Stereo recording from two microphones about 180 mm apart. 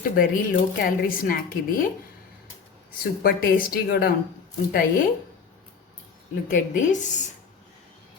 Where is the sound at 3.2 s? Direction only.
55° left (ahead or behind).